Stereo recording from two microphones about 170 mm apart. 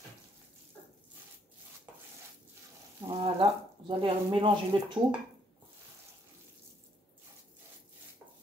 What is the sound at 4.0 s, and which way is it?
Speech, 30° right (ahead or behind).